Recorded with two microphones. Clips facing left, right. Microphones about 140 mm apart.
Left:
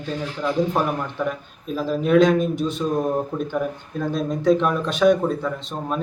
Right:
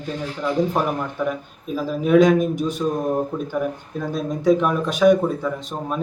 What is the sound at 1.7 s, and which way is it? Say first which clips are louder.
Speech: right 1 dB; 5° right (ahead or behind).